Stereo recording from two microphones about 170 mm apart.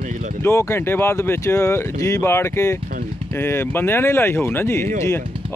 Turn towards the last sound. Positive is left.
turn(degrees=15)  # may be behind; listen again after turning